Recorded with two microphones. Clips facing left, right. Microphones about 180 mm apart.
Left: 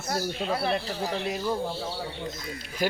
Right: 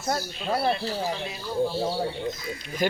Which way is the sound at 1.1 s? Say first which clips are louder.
Left 3 dB; 55° left (ahead or behind).